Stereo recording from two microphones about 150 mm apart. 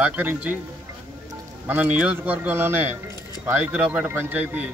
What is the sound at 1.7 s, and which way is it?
A man's voice, 10° right (ahead or behind).